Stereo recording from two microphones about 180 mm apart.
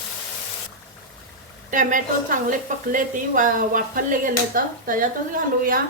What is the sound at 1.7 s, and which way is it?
A woman's voice, 45° right (ahead or behind).